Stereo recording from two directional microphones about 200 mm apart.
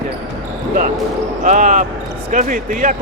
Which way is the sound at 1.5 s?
40° right (ahead or behind).